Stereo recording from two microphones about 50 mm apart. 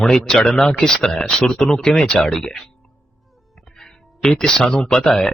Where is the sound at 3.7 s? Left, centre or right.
Centre.